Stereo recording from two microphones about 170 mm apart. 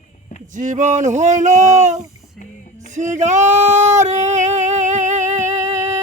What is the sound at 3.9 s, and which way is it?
Music, 45° right (ahead or behind).